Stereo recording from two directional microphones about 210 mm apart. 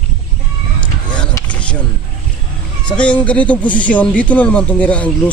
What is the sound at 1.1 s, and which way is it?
Vehicle, 5° left (ahead or behind).